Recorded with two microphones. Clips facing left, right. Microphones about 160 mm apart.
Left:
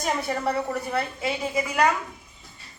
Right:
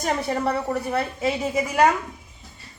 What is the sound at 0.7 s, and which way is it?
Speech, 40° right (ahead or behind).